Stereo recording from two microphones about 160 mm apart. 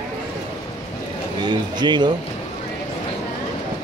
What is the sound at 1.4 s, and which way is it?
Speech, 30° right (ahead or behind).